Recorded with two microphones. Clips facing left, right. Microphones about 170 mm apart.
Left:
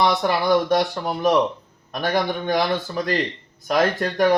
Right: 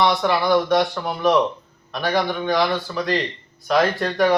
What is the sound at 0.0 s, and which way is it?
Speech, 40° left (ahead or behind).